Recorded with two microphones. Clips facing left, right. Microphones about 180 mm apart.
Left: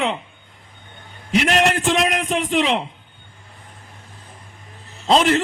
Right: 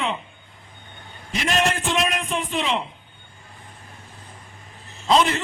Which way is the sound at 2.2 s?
85° left.